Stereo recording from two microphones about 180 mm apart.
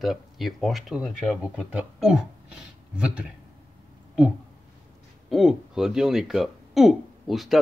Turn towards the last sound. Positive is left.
turn(degrees=0)  # may be behind; listen again after turning